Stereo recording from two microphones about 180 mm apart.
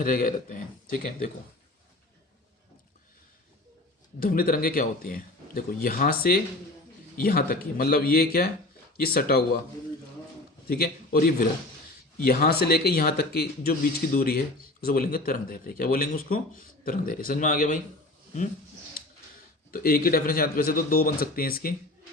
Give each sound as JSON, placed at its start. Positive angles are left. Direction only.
{"t": 0.0, "sound": "speech", "side_deg": 50}
{"t": 4.2, "sound": "speech", "side_deg": 55}
{"t": 10.7, "sound": "speech", "side_deg": 55}
{"t": 19.7, "sound": "speech", "side_deg": 55}